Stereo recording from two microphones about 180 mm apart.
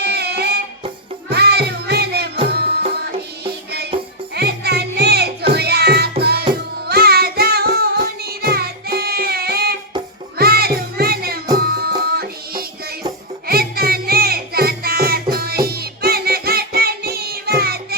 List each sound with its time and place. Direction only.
0.0 s music: 65° right (ahead or behind)
4.4 s music: 65° right (ahead or behind)